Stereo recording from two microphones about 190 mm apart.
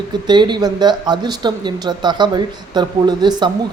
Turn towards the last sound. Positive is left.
turn(degrees=-20)  # may be behind; listen again after turning